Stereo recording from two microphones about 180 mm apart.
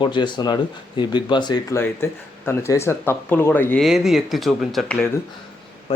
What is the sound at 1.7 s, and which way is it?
Speech, 15° left (ahead or behind).